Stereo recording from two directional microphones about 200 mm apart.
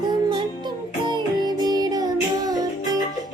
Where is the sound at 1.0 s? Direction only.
20° right (ahead or behind).